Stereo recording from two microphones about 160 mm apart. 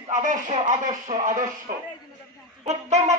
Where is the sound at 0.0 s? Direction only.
50° right (ahead or behind).